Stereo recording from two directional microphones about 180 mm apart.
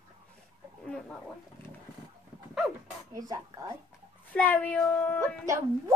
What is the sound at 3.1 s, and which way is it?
Speech, 20° right (ahead or behind).